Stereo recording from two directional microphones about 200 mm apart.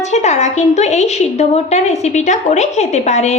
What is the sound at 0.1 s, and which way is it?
A woman's voice, 35° left (ahead or behind).